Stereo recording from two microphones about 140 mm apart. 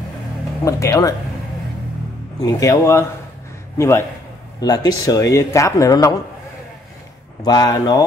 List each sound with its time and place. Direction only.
0.7 s speech: 20° left (ahead or behind)
2.4 s a man's voice: 25° left (ahead or behind)
7.4 s speech: 30° left (ahead or behind)